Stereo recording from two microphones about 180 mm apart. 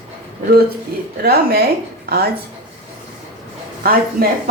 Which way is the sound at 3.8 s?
55° right (ahead or behind).